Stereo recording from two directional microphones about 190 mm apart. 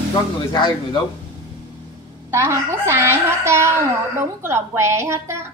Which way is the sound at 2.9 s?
15° right (ahead or behind).